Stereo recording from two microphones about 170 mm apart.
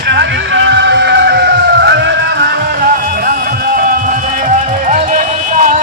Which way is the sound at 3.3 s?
55° right (ahead or behind).